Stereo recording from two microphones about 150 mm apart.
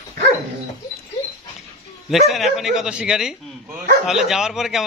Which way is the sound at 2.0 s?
Centre (ahead or behind).